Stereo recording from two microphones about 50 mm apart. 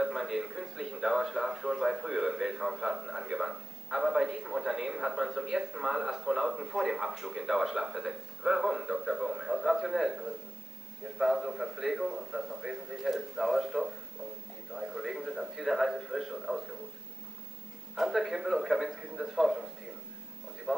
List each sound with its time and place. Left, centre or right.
0.0 s a man's voice: centre
17.9 s a man's voice: centre